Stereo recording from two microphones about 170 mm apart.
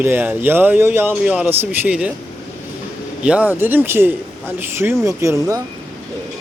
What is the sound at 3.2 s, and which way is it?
Speech, 10° right (ahead or behind).